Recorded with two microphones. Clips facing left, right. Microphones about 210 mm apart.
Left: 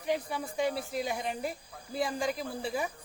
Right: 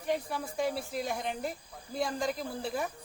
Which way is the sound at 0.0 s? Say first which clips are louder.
Even; centre (ahead or behind).